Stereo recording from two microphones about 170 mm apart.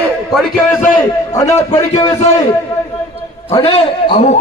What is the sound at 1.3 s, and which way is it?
Speech, 20° left (ahead or behind).